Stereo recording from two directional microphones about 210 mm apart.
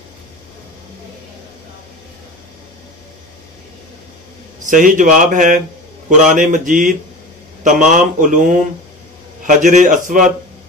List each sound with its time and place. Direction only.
4.6 s speech: 40° right (ahead or behind)